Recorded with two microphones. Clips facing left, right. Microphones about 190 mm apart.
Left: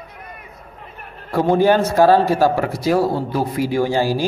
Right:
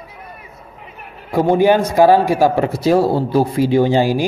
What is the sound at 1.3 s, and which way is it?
A man's voice, 15° right (ahead or behind).